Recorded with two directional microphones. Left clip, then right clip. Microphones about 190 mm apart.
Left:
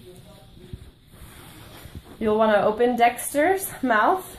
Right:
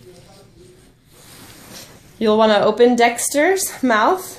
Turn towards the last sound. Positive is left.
turn(degrees=-50)  # may be behind; listen again after turning